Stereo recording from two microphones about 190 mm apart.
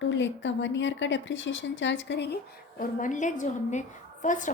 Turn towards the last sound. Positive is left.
turn(degrees=40)  # may be behind; listen again after turning